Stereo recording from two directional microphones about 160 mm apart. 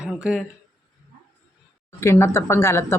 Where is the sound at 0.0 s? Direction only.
5° right (ahead or behind).